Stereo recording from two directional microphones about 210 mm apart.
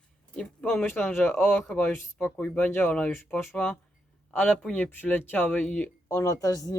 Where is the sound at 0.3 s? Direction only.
5° left (ahead or behind).